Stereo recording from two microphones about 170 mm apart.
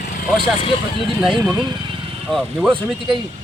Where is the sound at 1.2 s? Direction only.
Centre (ahead or behind).